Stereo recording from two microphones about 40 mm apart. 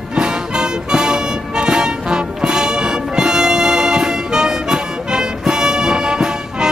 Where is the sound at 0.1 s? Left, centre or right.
Centre.